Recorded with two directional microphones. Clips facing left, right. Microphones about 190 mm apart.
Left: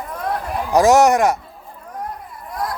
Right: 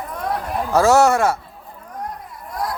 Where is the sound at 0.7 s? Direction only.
15° left (ahead or behind).